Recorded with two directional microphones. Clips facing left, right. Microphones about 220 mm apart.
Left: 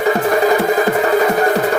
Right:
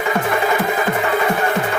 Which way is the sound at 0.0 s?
35° left (ahead or behind).